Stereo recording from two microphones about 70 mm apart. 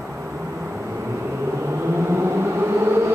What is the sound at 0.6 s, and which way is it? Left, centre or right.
Vehicle, right.